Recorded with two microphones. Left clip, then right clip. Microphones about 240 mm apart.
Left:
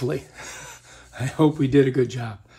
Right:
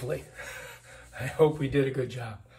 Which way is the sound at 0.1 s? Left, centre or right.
Left.